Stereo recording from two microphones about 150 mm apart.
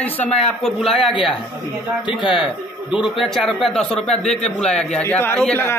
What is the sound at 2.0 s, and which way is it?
Speech, 35° left (ahead or behind).